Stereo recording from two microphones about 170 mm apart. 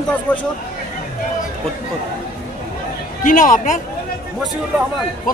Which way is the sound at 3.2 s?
50° left (ahead or behind).